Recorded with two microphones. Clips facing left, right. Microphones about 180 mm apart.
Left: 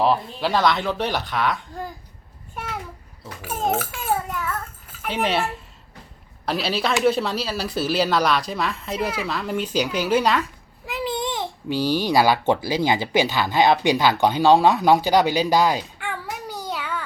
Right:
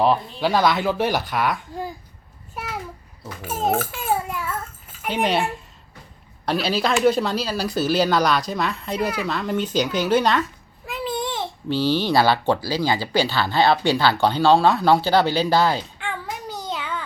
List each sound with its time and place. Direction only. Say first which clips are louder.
0.0 s speech: right 1 dB; centre (ahead or behind)
3.5 s speech: right 1 dB; centre (ahead or behind)
4.0 s babbling: right 1 dB; 5° right (ahead or behind)
5.0 s speech: right 1 dB; centre (ahead or behind)
10.9 s babbling: even; 20° left (ahead or behind)
12.0 s speech: left 2 dB; 10° left (ahead or behind)